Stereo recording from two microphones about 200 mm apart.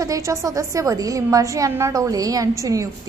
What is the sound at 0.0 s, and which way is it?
A woman's voice, 15° right (ahead or behind).